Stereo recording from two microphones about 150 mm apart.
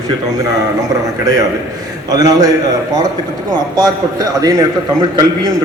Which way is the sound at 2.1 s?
25° right (ahead or behind).